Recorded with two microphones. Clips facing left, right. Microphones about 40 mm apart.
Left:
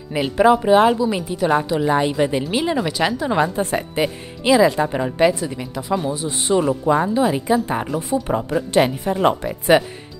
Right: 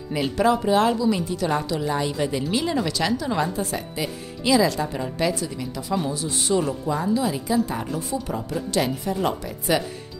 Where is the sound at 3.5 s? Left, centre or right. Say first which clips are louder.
Left 7 dB; left.